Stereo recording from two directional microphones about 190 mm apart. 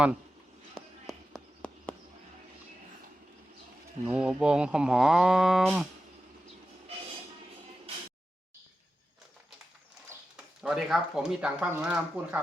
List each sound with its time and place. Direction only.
0.7 s run: centre (ahead or behind)
4.0 s speech: 5° right (ahead or behind)
10.1 s speech: 5° right (ahead or behind)